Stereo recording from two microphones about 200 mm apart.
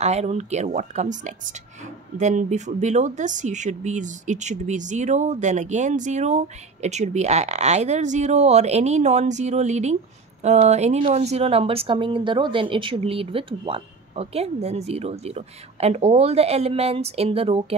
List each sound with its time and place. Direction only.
0.0 s speech: 35° right (ahead or behind)